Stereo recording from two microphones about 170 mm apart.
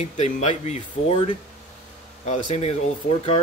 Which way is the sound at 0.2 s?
45° left (ahead or behind).